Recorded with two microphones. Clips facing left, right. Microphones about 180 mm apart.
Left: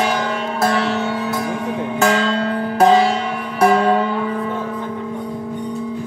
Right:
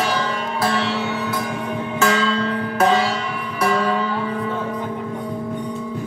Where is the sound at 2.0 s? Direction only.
40° left (ahead or behind).